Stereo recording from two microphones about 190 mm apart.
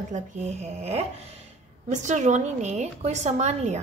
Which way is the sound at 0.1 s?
35° right (ahead or behind).